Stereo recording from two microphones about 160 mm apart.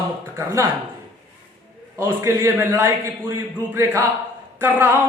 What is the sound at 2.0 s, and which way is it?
A man's voice, 15° right (ahead or behind).